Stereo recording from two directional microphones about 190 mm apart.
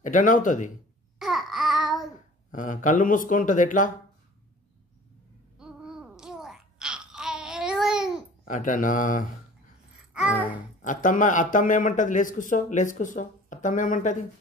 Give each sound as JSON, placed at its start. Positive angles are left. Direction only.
{"t": 0.0, "sound": "speech", "side_deg": 45}
{"t": 1.2, "sound": "babbling", "side_deg": 0}
{"t": 2.5, "sound": "speech", "side_deg": 45}
{"t": 5.6, "sound": "babbling", "side_deg": -5}
{"t": 8.5, "sound": "speech", "side_deg": 45}
{"t": 10.5, "sound": "speech", "side_deg": 45}